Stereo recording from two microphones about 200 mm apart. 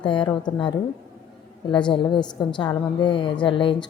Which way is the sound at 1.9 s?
25° left (ahead or behind).